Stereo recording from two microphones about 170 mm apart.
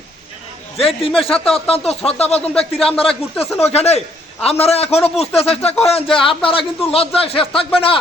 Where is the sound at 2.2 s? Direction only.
35° left (ahead or behind).